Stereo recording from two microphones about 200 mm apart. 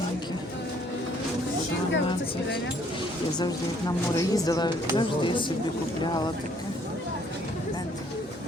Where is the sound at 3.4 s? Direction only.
20° left (ahead or behind).